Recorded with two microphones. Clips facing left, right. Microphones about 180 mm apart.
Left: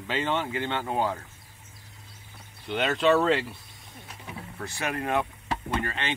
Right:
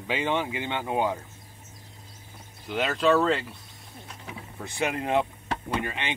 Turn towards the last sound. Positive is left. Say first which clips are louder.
# even
turn(degrees=-15)  # may be behind; listen again after turning